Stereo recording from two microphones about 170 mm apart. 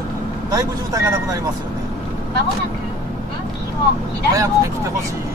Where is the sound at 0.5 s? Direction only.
20° right (ahead or behind).